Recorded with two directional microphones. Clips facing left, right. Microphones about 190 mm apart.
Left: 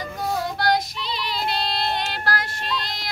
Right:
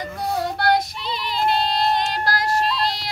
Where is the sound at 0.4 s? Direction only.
60° right (ahead or behind).